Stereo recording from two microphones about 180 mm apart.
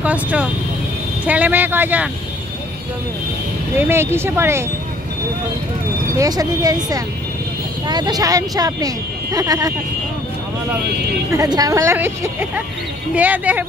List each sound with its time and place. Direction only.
0.0 s speech: 10° right (ahead or behind)
3.8 s speech: 15° right (ahead or behind)
6.1 s speech: 20° right (ahead or behind)
11.3 s speech: 20° right (ahead or behind)